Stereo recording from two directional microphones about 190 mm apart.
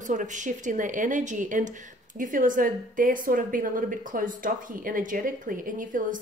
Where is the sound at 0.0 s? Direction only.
40° right (ahead or behind).